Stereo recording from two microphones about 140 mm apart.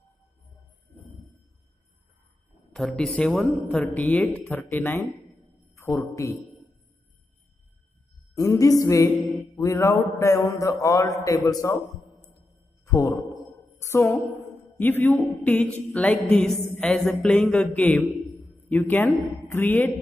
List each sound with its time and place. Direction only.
2.7 s a man's voice: 5° left (ahead or behind); by 6.3 s 20° left (ahead or behind)
8.4 s a man's voice: 25° left (ahead or behind)
12.8 s a sound: 20° left (ahead or behind)
13.7 s a woman's voice: 20° left (ahead or behind)